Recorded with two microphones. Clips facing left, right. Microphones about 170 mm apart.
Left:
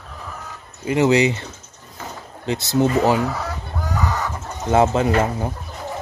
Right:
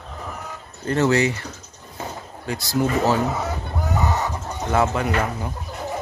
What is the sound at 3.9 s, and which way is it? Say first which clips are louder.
Chicken: right 1 dB; 25° right (ahead or behind).